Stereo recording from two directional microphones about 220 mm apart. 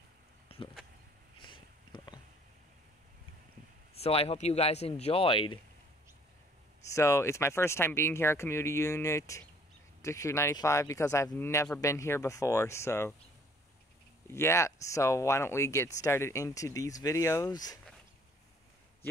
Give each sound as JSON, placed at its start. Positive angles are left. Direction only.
{"t": 0.5, "sound": "a sound", "side_deg": 25}
{"t": 3.9, "sound": "speech", "side_deg": 25}
{"t": 6.9, "sound": "speech", "side_deg": 15}
{"t": 14.3, "sound": "speech", "side_deg": 10}